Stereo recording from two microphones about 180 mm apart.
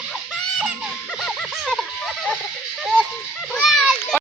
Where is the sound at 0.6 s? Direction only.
Centre (ahead or behind).